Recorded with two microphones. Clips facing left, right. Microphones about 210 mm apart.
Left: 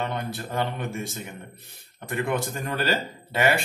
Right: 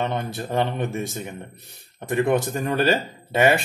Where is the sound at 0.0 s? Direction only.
20° right (ahead or behind).